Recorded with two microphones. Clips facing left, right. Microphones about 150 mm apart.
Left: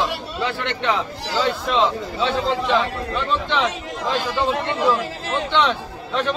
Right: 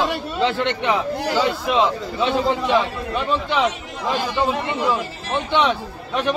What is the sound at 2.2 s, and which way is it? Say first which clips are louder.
A man's voice: right 2 dB; 15° right (ahead or behind).